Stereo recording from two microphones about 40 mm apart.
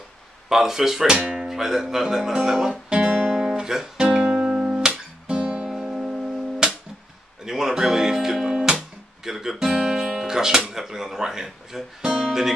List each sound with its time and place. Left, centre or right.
0.5 s speech: centre
2.9 s guitar: right
3.2 s guitar: centre; by 5.7 s right
5.7 s music: right
9.3 s guitar: centre
10.7 s speech: centre